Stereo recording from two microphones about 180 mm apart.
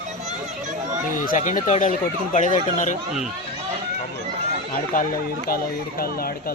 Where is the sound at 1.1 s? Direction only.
50° left (ahead or behind).